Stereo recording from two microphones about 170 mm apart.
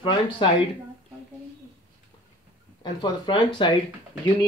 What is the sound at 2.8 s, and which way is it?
Speech, 25° left (ahead or behind).